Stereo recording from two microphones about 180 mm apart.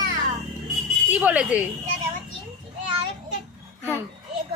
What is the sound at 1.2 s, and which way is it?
Speech, 5° right (ahead or behind).